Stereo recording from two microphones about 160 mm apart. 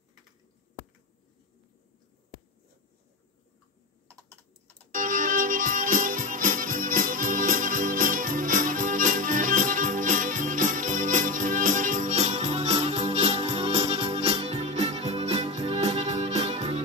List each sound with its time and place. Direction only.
4.9 s music: 55° right (ahead or behind); by 16.8 s 40° right (ahead or behind)